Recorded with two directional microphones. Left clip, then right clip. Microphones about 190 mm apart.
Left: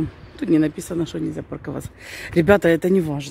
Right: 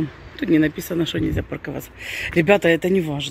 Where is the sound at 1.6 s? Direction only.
15° left (ahead or behind).